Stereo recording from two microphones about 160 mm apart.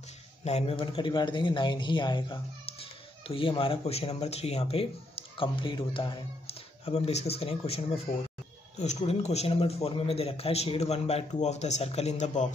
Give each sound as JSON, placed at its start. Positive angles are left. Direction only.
{"t": 0.4, "sound": "a man's voice", "side_deg": 40}